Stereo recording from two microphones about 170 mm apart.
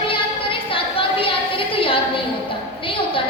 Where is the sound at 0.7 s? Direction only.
30° left (ahead or behind).